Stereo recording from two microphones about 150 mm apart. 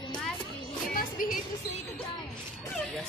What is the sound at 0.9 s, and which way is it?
Music, 70° left (ahead or behind).